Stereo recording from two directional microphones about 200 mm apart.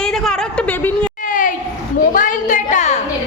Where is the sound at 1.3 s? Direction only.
40° left (ahead or behind).